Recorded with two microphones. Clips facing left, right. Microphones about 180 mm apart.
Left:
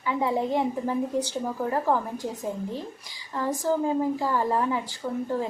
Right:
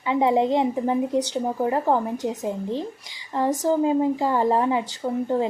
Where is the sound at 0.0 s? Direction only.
20° right (ahead or behind).